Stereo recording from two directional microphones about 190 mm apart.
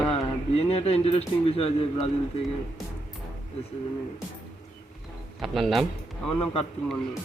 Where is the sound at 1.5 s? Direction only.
30° left (ahead or behind).